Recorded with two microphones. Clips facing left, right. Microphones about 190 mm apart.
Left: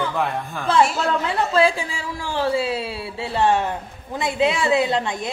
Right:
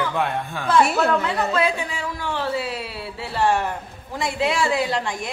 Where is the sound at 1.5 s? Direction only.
30° left (ahead or behind).